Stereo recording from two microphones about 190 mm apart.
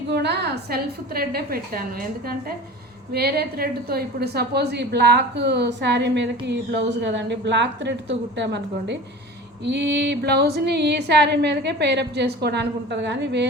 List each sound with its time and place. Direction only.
0.1 s a woman's voice: 60° right (ahead or behind)